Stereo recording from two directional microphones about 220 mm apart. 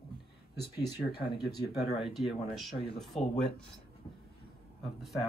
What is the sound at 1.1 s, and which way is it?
Speech, 25° left (ahead or behind).